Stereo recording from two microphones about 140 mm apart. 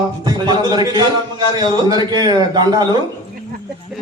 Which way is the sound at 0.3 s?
30° right (ahead or behind).